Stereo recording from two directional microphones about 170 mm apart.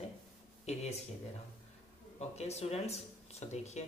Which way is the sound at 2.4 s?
40° left (ahead or behind).